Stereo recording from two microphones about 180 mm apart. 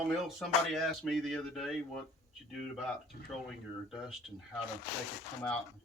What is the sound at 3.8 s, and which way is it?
Speech, centre (ahead or behind).